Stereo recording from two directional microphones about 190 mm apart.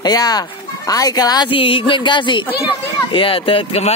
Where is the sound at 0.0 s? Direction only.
20° left (ahead or behind).